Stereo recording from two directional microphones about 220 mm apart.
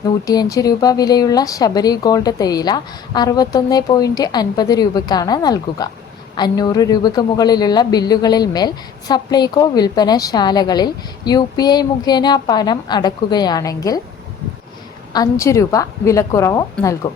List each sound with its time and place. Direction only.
0.0 s a man's voice: 15° left (ahead or behind)
15.1 s speech: 15° left (ahead or behind)